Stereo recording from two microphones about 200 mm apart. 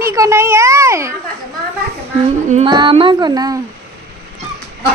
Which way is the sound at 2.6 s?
25° right (ahead or behind).